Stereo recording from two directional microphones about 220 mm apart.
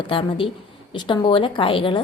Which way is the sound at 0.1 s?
25° left (ahead or behind).